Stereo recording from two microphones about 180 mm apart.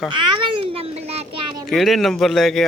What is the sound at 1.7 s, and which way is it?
Speech, centre (ahead or behind).